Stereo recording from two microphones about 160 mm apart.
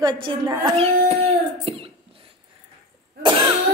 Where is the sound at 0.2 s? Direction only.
30° right (ahead or behind).